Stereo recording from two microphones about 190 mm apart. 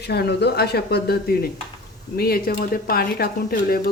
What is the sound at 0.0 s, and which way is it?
Speech, 60° left (ahead or behind).